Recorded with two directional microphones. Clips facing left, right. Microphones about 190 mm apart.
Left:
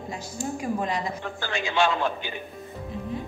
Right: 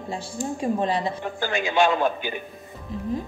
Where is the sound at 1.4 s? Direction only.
15° right (ahead or behind).